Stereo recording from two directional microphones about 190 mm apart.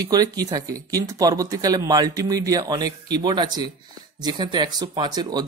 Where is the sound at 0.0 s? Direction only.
20° right (ahead or behind).